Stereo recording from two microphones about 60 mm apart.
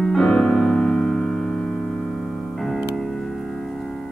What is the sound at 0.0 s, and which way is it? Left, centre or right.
Piano, centre.